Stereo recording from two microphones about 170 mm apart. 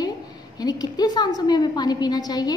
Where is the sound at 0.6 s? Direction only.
25° left (ahead or behind).